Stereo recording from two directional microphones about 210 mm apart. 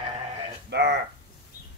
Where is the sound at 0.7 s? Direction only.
55° right (ahead or behind).